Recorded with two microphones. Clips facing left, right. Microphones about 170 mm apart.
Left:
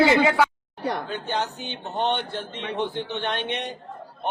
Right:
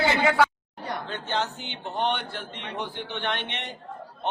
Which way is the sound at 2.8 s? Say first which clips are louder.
Left 4 dB; 20° left (ahead or behind).